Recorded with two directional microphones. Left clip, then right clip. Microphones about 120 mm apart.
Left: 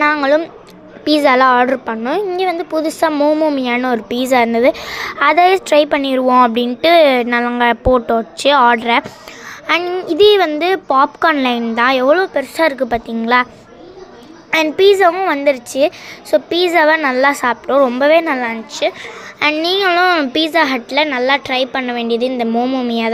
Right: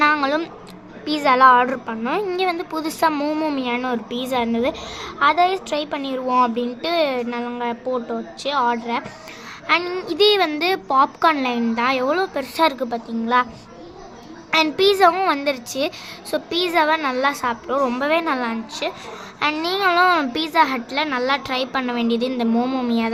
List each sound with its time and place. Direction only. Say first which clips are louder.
0.0 s a sound: left 5 dB; 20° left (ahead or behind)
1.0 s a woman's voice: left 3 dB; 40° left (ahead or behind)
2.0 s a woman's voice: left 4 dB; 15° left (ahead or behind)
3.6 s a woman's voice: left 7 dB; 40° left (ahead or behind); by 9.0 s 60° left (ahead or behind)
9.8 s a woman's voice: left 7 dB; 10° left (ahead or behind)
10.1 s a woman's voice: left 7 dB; 25° left (ahead or behind)
12.1 s a woman's voice: left 7 dB; 15° left (ahead or behind)
12.9 s a woman's voice: left 6 dB; 50° left (ahead or behind)
14.5 s a woman's voice: left 6 dB; 20° left (ahead or behind)
20.3 s a woman's voice: left 4 dB; 35° left (ahead or behind); by 22.9 s 15° left (ahead or behind)